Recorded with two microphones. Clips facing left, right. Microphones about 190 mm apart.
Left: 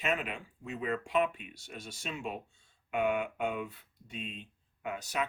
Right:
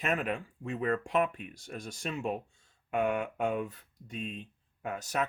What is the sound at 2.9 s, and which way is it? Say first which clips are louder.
Speech: right 1 dB; 40° right (ahead or behind).